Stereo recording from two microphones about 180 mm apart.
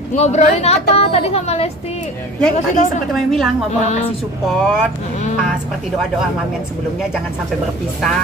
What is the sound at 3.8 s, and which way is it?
Speech, 40° left (ahead or behind).